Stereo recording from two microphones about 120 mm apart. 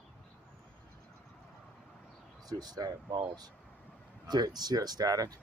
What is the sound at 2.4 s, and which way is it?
Speech, 35° right (ahead or behind).